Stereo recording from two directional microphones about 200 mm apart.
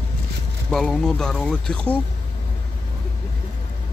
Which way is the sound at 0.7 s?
Centre (ahead or behind).